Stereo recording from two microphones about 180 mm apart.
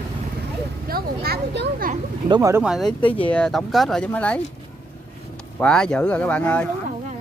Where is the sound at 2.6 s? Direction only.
5° right (ahead or behind).